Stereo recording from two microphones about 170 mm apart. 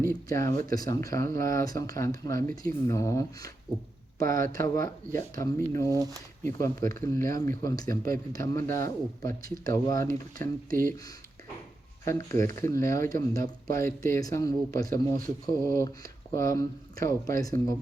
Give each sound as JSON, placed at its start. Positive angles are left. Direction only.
{"t": 0.1, "sound": "speech", "side_deg": 20}
{"t": 4.5, "sound": "speech", "side_deg": 20}
{"t": 5.9, "sound": "speech", "side_deg": -20}
{"t": 6.4, "sound": "speech", "side_deg": 20}
{"t": 10.7, "sound": "speech", "side_deg": -55}
{"t": 12.0, "sound": "speech", "side_deg": 15}